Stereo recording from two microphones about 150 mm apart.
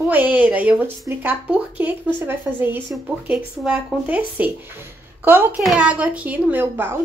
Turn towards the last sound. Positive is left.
turn(degrees=-15)  # may be behind; listen again after turning